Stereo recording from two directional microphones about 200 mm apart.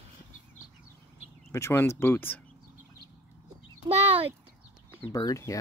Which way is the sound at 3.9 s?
30° right (ahead or behind).